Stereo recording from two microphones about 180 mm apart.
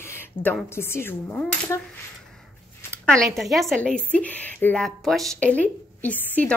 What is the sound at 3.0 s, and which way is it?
A woman's voice, 5° left (ahead or behind).